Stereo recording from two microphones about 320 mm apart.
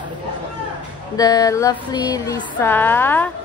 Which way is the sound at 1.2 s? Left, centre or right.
Centre.